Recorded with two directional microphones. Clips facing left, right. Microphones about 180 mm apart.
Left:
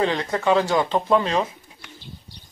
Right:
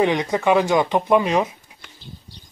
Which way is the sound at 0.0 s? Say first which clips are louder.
Right 3 dB; 15° right (ahead or behind).